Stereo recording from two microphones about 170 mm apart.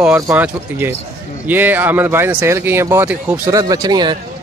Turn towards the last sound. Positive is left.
turn(degrees=-25)  # may be behind; listen again after turning